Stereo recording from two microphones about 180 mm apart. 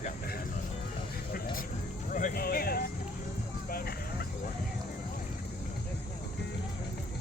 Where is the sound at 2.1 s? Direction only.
45° left (ahead or behind).